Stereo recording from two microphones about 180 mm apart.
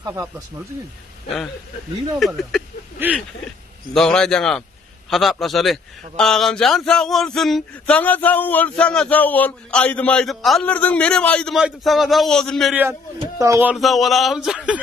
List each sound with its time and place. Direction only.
0.0 s speech: 15° right (ahead or behind)
2.1 s a man's voice: centre (ahead or behind)
3.0 s a sound: 10° right (ahead or behind)
3.9 s a man's voice: 5° left (ahead or behind)
13.4 s speech: 15° right (ahead or behind)
13.7 s a man's voice: centre (ahead or behind)